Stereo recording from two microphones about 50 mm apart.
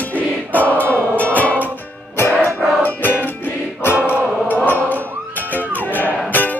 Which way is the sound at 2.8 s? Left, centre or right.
Left.